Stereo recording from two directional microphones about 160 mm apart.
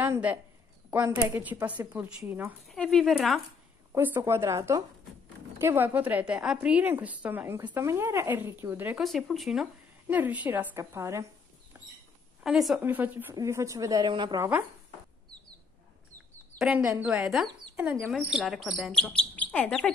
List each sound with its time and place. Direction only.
0.0 s a woman's voice: 10° right (ahead or behind)
2.7 s speech: 5° left (ahead or behind)
3.9 s a woman's voice: 15° right (ahead or behind)
9.0 s a woman's voice: centre (ahead or behind); by 11.2 s 15° right (ahead or behind)
12.4 s a woman's voice: centre (ahead or behind); by 14.4 s 30° right (ahead or behind)
16.5 s a woman's voice: 5° right (ahead or behind); by 19.9 s 10° left (ahead or behind)